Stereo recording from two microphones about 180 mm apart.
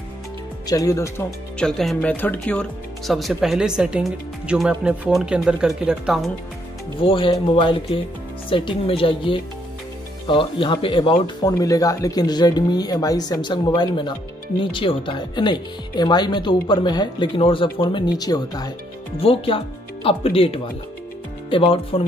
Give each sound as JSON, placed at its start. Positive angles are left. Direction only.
{"t": 0.7, "sound": "speech", "side_deg": 20}
{"t": 1.6, "sound": "speech", "side_deg": 5}
{"t": 7.0, "sound": "speech", "side_deg": 30}
{"t": 11.1, "sound": "speech", "side_deg": 20}
{"t": 19.1, "sound": "speech", "side_deg": 30}